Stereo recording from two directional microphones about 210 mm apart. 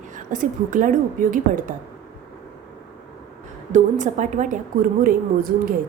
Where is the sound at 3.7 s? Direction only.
35° right (ahead or behind).